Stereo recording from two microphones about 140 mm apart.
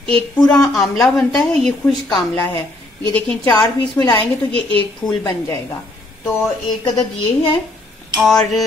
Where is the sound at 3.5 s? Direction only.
30° left (ahead or behind).